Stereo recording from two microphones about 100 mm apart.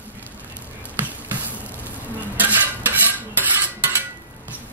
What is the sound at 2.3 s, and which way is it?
Cutlery, 20° right (ahead or behind).